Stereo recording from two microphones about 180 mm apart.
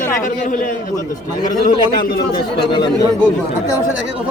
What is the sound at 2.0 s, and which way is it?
Speech, 55° left (ahead or behind).